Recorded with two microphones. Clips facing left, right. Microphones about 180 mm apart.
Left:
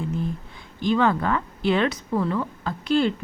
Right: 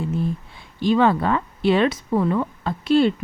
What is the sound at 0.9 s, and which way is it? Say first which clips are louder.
A woman's voice: right 3 dB; 20° right (ahead or behind).